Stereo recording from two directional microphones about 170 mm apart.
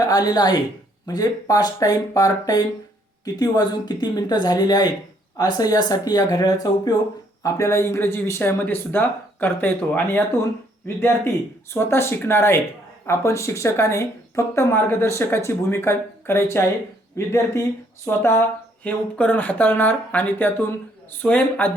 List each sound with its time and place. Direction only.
0.0 s speech: 20° left (ahead or behind)
11.7 s speech: 15° left (ahead or behind)